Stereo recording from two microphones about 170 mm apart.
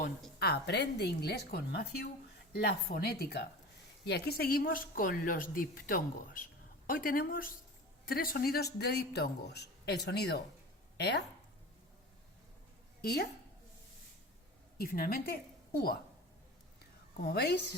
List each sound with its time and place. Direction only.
0.3 s speech: 70° left (ahead or behind)
13.0 s a woman's voice: 70° left (ahead or behind)
14.8 s a woman's voice: 60° left (ahead or behind)
17.2 s speech: 70° left (ahead or behind)